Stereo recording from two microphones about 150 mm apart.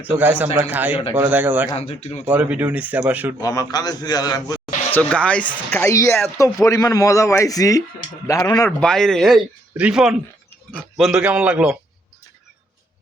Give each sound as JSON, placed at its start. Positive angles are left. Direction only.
{"t": 0.2, "sound": "speech", "side_deg": -10}
{"t": 1.7, "sound": "speech", "side_deg": 45}
{"t": 2.2, "sound": "speech", "side_deg": -10}
{"t": 3.4, "sound": "speech", "side_deg": 25}
{"t": 4.9, "sound": "speech", "side_deg": 10}
{"t": 8.8, "sound": "a man's voice", "side_deg": 5}